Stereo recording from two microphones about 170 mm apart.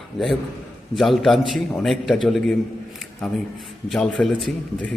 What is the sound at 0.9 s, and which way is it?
A man's voice, centre (ahead or behind).